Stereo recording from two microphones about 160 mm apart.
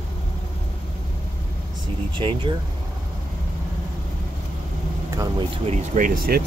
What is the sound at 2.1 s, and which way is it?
Speech, 30° right (ahead or behind).